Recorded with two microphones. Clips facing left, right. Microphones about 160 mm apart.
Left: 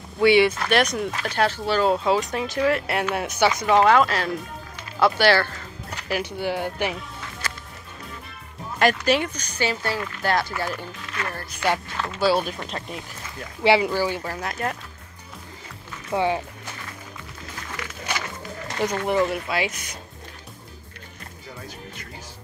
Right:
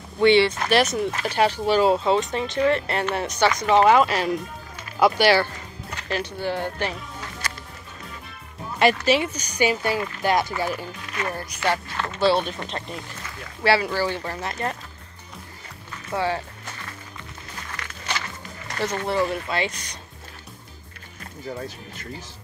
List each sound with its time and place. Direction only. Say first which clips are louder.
0.2 s speech: even; 10° left (ahead or behind)
0.7 s speech: right 1 dB; centre (ahead or behind)
6.0 s speech: left 1 dB; 10° left (ahead or behind)
8.7 s speech: right 1 dB; 5° right (ahead or behind)
12.0 s speech: right 1 dB; 5° left (ahead or behind)
13.6 s speech: left 2 dB; 20° left (ahead or behind); by 14.8 s centre (ahead or behind)
16.1 s speech: left 2 dB; 20° left (ahead or behind)
17.7 s a sound: left 1 dB; 10° left (ahead or behind)
18.8 s speech: left 2 dB; 15° left (ahead or behind)